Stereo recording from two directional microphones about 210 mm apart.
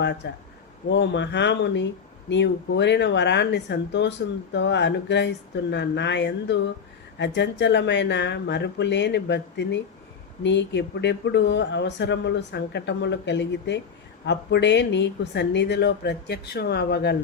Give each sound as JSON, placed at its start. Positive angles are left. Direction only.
{"t": 0.2, "sound": "a woman's voice", "side_deg": 55}